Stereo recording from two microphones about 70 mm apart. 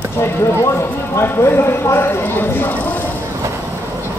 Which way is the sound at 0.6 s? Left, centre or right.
Left.